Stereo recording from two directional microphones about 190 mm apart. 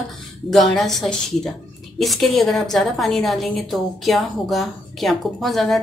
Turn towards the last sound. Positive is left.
turn(degrees=0)  # may be behind; listen again after turning